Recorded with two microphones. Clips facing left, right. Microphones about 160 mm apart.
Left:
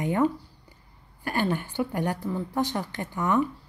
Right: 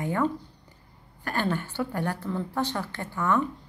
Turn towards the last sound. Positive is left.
turn(degrees=15)  # may be behind; listen again after turning